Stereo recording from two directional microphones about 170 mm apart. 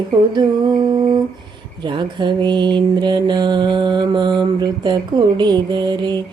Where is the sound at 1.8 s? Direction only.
25° right (ahead or behind).